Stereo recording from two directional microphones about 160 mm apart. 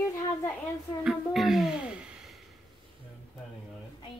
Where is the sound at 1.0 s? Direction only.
Centre (ahead or behind).